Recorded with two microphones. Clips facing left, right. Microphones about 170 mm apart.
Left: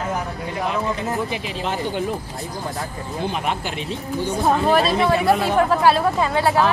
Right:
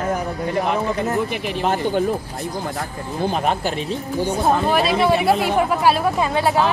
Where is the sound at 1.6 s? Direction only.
50° right (ahead or behind).